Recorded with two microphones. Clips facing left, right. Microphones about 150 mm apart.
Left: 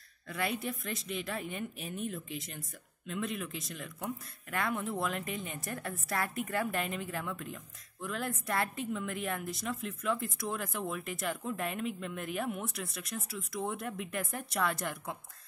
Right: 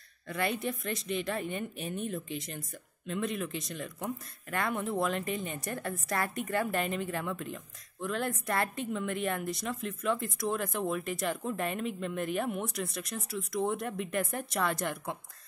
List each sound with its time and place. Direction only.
0.3 s a woman's voice: centre (ahead or behind)